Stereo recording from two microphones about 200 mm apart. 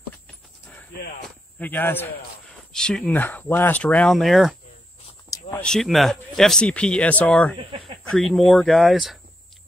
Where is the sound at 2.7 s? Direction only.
5° left (ahead or behind).